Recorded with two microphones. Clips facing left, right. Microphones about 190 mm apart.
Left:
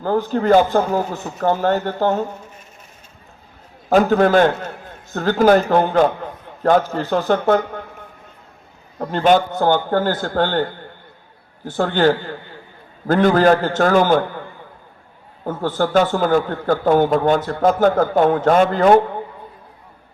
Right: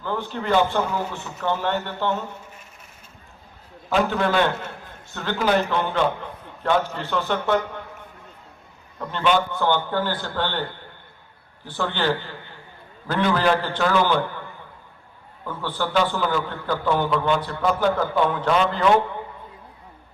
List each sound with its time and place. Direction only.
0.0 s a man's voice: 40° left (ahead or behind)
3.8 s a man's voice: 45° left (ahead or behind)
9.0 s a man's voice: 40° left (ahead or behind)
15.4 s a man's voice: 45° left (ahead or behind)